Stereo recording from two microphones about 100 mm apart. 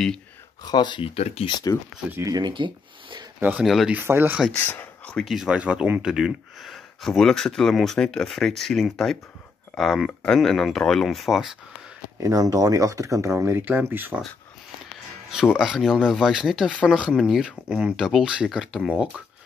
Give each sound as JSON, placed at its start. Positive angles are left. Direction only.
{"t": 0.7, "sound": "speech", "side_deg": 45}
{"t": 1.1, "sound": "speech", "side_deg": 85}
{"t": 2.2, "sound": "speech", "side_deg": -45}
{"t": 3.3, "sound": "speech", "side_deg": -20}
{"t": 3.6, "sound": "speech", "side_deg": 0}
{"t": 3.9, "sound": "speech", "side_deg": -20}
{"t": 4.5, "sound": "speech", "side_deg": 20}
{"t": 5.1, "sound": "speech", "side_deg": 0}
{"t": 12.2, "sound": "speech", "side_deg": -30}
{"t": 15.5, "sound": "speech", "side_deg": -5}